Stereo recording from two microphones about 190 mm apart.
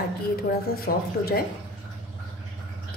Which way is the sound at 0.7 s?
50° left (ahead or behind).